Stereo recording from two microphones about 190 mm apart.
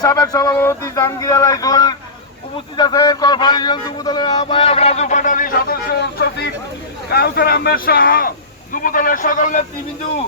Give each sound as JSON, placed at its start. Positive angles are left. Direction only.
{"t": 0.0, "sound": "a man's voice", "side_deg": 20}